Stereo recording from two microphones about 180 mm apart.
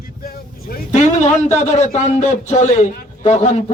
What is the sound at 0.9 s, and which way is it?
A man's voice, 40° left (ahead or behind).